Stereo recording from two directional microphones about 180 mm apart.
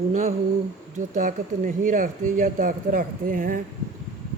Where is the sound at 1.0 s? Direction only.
45° right (ahead or behind).